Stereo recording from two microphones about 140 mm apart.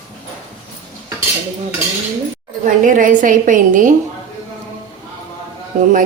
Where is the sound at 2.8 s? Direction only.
70° right (ahead or behind).